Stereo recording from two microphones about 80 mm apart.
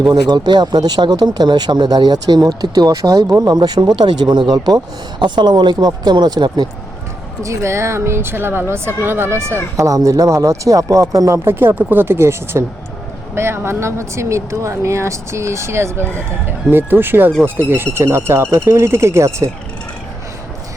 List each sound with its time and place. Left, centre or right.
0.0 s speech: right
5.2 s speech: right
7.4 s speech: right
9.7 s speech: right
11.4 s speech: right